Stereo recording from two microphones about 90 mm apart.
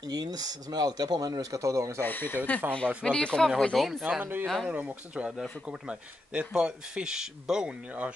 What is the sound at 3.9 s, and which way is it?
Speech, 5° right (ahead or behind).